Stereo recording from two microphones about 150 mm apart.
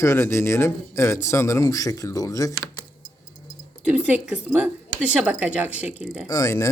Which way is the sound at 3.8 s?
10° right (ahead or behind).